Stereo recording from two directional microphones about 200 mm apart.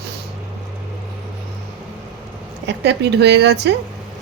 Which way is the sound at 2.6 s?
60° right (ahead or behind).